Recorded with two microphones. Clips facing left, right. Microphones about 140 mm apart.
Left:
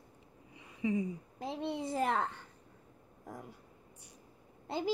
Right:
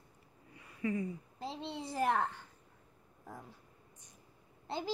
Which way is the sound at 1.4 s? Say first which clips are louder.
Left 5 dB; 55° left (ahead or behind).